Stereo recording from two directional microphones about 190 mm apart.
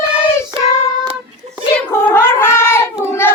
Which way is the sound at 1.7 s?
10° left (ahead or behind).